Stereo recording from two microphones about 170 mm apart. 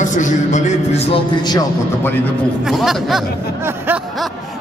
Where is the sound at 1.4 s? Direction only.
25° left (ahead or behind).